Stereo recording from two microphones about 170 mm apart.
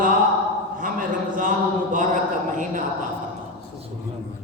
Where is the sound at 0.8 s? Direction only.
50° right (ahead or behind).